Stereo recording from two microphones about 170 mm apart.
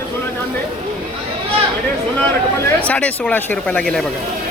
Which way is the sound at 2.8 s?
10° left (ahead or behind).